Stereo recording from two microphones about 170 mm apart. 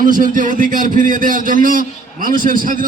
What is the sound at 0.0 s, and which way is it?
A man's voice, 50° right (ahead or behind).